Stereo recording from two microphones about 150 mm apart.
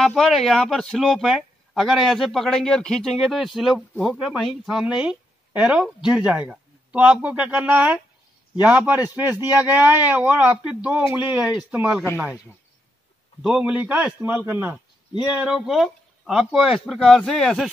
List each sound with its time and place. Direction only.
0.0 s a man's voice: centre (ahead or behind)
13.4 s a man's voice: 5° right (ahead or behind)